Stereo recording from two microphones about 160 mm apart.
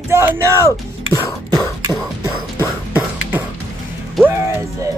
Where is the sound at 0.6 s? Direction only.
20° left (ahead or behind).